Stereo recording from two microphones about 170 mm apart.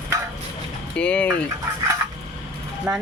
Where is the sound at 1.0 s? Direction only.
5° left (ahead or behind).